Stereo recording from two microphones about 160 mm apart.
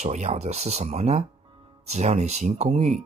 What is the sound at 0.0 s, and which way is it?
Speech, 45° right (ahead or behind).